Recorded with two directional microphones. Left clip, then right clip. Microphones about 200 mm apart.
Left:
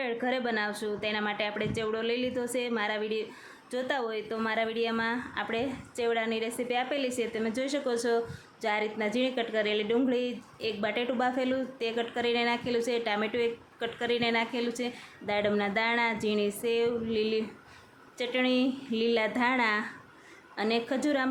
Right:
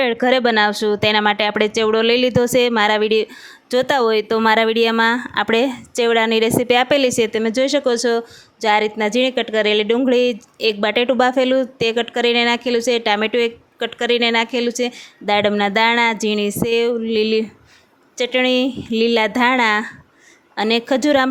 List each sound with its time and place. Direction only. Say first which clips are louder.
0.0 s speech: right 15 dB; 50° right (ahead or behind)